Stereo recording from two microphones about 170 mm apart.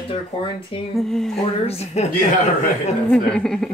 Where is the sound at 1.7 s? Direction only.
35° left (ahead or behind).